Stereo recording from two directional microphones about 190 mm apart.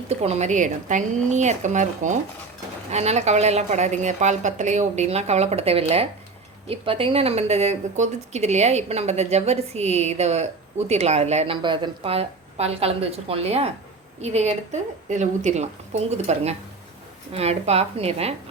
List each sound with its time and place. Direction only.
0.1 s speech: 35° right (ahead or behind)